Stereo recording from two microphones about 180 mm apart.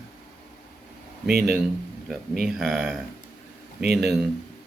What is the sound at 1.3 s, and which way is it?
Speech, 60° right (ahead or behind).